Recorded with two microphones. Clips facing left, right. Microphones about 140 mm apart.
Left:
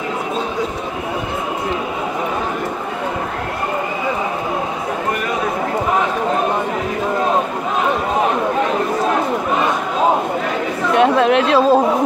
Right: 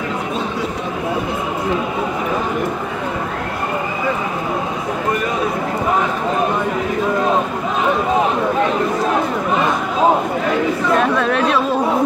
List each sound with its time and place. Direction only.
11.0 s chatter: 20° left (ahead or behind)